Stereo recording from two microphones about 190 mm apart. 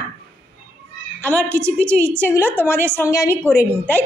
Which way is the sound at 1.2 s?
10° left (ahead or behind).